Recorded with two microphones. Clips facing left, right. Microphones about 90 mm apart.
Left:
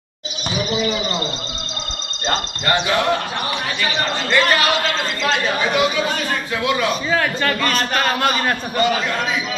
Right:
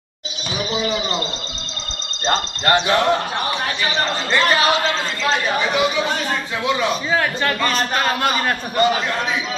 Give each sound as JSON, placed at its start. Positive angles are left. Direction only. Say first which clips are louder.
{"t": 2.2, "sound": "speech", "louder": "right 2 dB", "side_deg": -30}
{"t": 4.3, "sound": "speech", "louder": "even", "side_deg": -25}
{"t": 5.7, "sound": "speech", "louder": "left 1 dB", "side_deg": -15}
{"t": 6.8, "sound": "a man's voice", "louder": "even", "side_deg": -10}
{"t": 8.1, "sound": "a man's voice", "louder": "left 1 dB", "side_deg": -5}
{"t": 8.8, "sound": "speech", "louder": "right 1 dB", "side_deg": -25}